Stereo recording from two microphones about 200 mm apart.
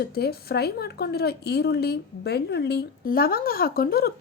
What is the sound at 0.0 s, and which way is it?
A woman's voice, 55° left (ahead or behind).